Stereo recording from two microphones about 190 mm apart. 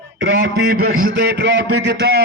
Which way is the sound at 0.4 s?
50° right (ahead or behind).